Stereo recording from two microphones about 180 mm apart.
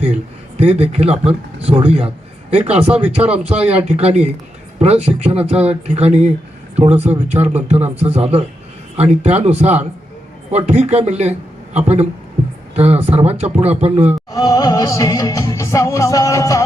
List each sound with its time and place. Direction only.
0.6 s speech: 35° right (ahead or behind)
2.5 s speech: 35° right (ahead or behind)
3.0 s speech: 5° right (ahead or behind)
3.6 s a man's voice: 35° right (ahead or behind)
14.3 s music: 20° left (ahead or behind)